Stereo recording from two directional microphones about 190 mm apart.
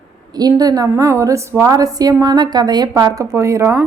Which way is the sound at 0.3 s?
20° right (ahead or behind).